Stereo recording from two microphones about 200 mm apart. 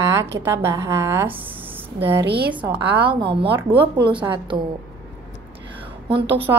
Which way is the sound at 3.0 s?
25° right (ahead or behind).